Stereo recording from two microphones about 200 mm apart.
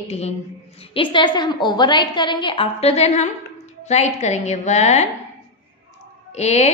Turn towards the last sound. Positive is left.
turn(degrees=35)  # may be behind; listen again after turning